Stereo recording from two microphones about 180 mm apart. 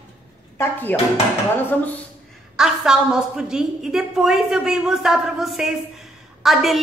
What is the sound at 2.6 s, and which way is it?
A woman's voice, 5° right (ahead or behind).